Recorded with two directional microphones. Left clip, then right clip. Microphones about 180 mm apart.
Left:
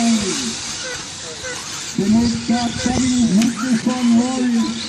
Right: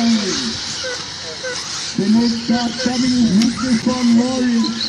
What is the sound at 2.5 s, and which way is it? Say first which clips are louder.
Speech: right 1 dB; 15° left (ahead or behind).